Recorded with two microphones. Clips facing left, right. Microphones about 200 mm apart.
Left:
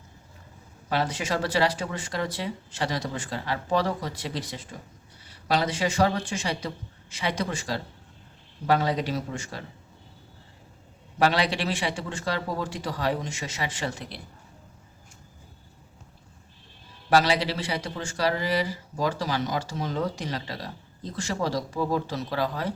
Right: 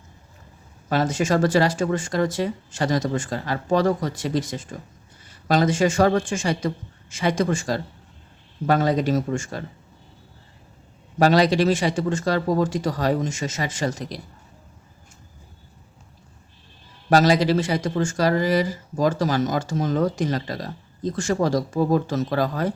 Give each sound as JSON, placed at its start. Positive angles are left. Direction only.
{"t": 0.9, "sound": "speech", "side_deg": -45}
{"t": 11.2, "sound": "speech", "side_deg": -40}
{"t": 17.1, "sound": "speech", "side_deg": -45}